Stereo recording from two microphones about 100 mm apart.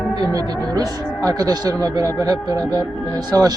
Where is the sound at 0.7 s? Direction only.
35° right (ahead or behind).